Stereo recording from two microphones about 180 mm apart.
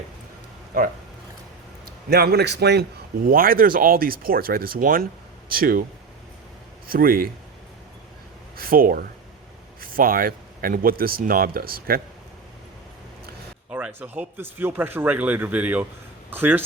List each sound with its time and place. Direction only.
0.7 s speech: 50° right (ahead or behind)
2.0 s a man's voice: 65° right (ahead or behind)
3.2 s speech: 55° right (ahead or behind)
6.8 s speech: 55° right (ahead or behind)
8.5 s a man's voice: 55° right (ahead or behind)
13.7 s speech: 10° right (ahead or behind)